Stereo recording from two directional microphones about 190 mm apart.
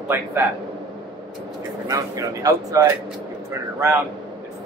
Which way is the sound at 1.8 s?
15° right (ahead or behind).